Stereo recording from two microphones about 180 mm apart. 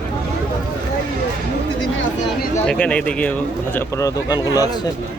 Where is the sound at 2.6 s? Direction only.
5° left (ahead or behind).